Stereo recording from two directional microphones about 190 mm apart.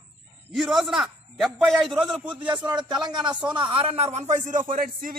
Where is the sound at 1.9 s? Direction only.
25° right (ahead or behind).